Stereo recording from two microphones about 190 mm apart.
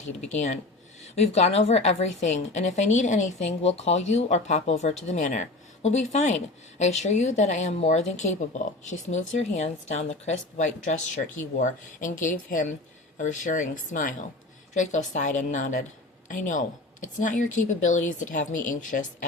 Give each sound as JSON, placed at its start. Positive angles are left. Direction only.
{"t": 0.3, "sound": "speech", "side_deg": 40}